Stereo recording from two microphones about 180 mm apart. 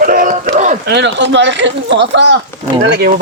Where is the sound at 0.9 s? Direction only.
75° right (ahead or behind).